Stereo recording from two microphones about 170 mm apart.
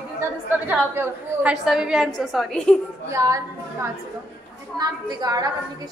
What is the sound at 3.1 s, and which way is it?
A woman's voice, 20° right (ahead or behind).